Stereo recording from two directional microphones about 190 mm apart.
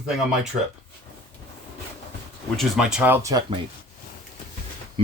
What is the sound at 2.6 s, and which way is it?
Speech, 5° right (ahead or behind).